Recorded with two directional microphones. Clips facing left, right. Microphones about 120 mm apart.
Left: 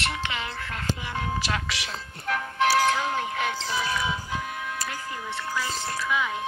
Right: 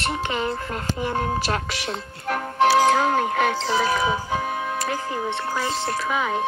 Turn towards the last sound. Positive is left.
turn(degrees=-45)  # may be behind; listen again after turning